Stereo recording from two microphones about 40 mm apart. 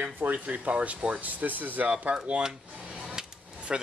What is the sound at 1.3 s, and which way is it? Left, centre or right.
Speech, right.